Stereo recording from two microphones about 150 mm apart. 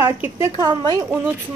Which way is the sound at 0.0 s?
15° right (ahead or behind).